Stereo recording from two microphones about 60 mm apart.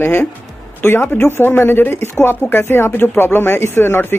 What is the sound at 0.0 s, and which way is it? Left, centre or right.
Speech, left.